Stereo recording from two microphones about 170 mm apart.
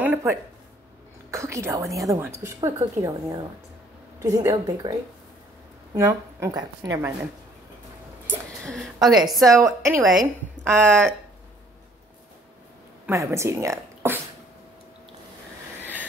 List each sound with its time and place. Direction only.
0.0 s a sound: 15° right (ahead or behind)
1.3 s a woman's voice: 15° right (ahead or behind)
5.9 s a woman's voice: 20° right (ahead or behind)
8.6 s a woman's voice: centre (ahead or behind)
13.0 s speech: 15° right (ahead or behind)